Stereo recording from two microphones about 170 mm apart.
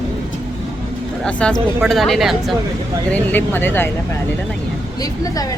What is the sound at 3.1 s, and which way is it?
Speech, 10° left (ahead or behind).